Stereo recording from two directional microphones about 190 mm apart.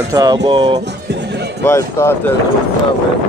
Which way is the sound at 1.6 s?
15° left (ahead or behind).